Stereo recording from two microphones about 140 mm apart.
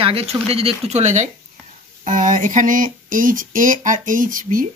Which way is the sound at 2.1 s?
70° right (ahead or behind).